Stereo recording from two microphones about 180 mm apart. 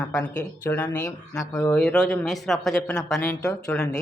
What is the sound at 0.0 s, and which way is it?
Speech, 10° left (ahead or behind).